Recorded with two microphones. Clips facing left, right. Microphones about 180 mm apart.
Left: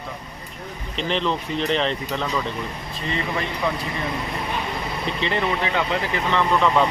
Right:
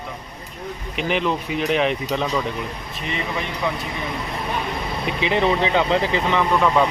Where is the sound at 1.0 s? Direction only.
10° right (ahead or behind).